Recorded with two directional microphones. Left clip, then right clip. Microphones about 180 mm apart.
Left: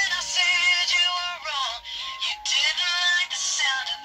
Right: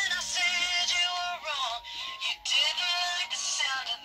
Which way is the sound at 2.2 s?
45° right (ahead or behind).